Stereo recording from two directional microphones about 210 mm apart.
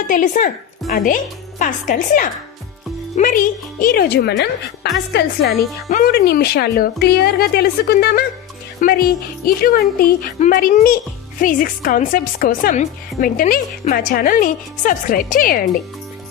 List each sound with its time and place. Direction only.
0.1 s a woman's voice: 40° left (ahead or behind)